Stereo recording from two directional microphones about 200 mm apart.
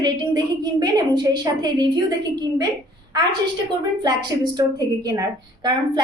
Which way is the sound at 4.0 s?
20° right (ahead or behind).